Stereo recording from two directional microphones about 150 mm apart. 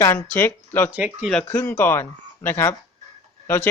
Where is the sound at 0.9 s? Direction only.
10° right (ahead or behind).